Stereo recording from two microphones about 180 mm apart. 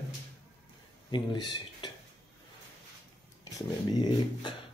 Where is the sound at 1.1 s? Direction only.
25° left (ahead or behind).